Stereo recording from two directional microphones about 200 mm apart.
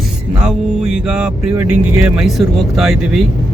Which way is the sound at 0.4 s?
5° right (ahead or behind).